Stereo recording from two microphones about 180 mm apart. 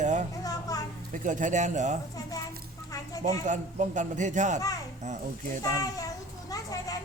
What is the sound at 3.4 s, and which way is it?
A man's voice, 45° right (ahead or behind).